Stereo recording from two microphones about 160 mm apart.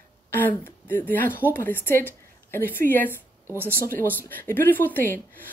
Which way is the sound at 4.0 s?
10° left (ahead or behind).